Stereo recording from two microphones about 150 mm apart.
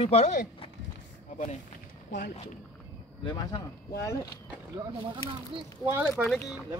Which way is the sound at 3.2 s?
30° left (ahead or behind).